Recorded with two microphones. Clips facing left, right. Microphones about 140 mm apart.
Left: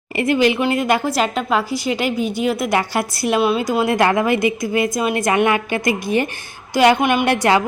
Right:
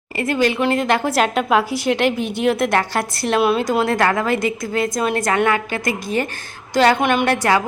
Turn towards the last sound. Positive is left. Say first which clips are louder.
# left 1 dB
turn(degrees=15)  # may be behind; listen again after turning